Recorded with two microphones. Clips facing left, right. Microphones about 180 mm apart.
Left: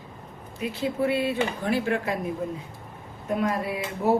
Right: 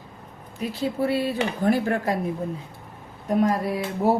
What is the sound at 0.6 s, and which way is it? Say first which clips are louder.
Speech: right 1 dB; 35° right (ahead or behind).